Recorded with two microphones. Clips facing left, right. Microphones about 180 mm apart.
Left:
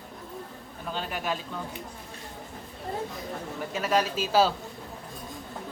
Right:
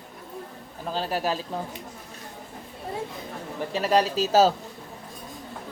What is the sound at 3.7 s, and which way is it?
Speech, 35° right (ahead or behind).